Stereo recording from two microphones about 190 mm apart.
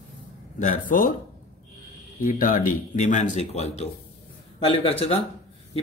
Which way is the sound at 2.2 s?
45° left (ahead or behind).